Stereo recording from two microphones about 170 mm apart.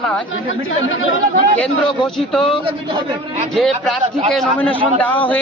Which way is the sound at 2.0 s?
5° left (ahead or behind).